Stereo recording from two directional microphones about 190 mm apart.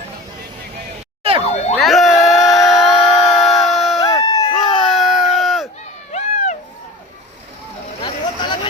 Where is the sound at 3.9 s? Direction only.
20° left (ahead or behind).